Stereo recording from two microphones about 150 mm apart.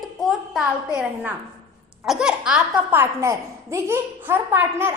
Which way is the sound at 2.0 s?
5° right (ahead or behind).